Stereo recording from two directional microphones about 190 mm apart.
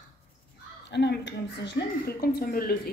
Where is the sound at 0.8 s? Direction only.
65° left (ahead or behind).